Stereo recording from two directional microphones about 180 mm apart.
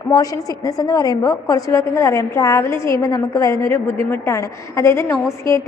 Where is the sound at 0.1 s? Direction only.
20° left (ahead or behind).